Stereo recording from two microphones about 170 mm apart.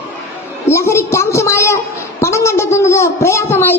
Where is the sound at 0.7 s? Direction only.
15° left (ahead or behind).